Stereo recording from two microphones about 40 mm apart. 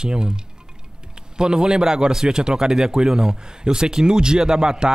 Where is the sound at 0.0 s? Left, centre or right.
Centre.